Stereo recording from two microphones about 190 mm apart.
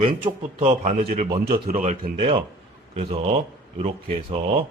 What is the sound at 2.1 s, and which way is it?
Speech, 25° right (ahead or behind).